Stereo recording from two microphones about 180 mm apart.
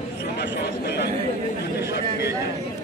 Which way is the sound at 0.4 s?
70° left (ahead or behind).